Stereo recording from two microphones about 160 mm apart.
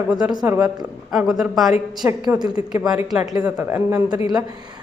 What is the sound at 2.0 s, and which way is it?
Speech, 15° right (ahead or behind).